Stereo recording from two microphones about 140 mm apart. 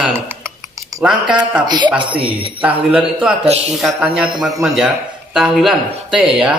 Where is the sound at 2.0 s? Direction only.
35° right (ahead or behind).